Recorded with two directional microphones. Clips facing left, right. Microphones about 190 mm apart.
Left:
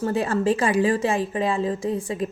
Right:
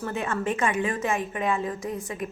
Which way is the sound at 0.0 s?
35° left (ahead or behind).